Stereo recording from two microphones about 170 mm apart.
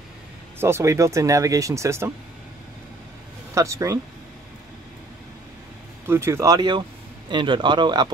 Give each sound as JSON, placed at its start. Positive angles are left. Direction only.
{"t": 0.6, "sound": "speech", "side_deg": -15}
{"t": 3.5, "sound": "speech", "side_deg": -15}
{"t": 6.0, "sound": "speech", "side_deg": -15}